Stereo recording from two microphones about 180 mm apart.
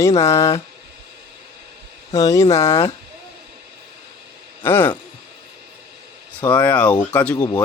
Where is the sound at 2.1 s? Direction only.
20° left (ahead or behind).